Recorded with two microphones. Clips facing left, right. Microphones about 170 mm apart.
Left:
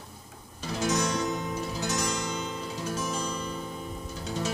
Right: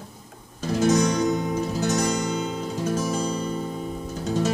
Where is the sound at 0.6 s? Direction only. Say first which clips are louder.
Right 8 dB; 45° right (ahead or behind).